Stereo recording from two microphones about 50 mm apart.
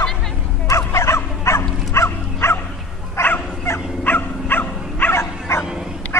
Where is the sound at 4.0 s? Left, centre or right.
Left.